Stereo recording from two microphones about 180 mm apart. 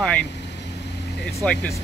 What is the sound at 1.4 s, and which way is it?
Speech, 5° left (ahead or behind).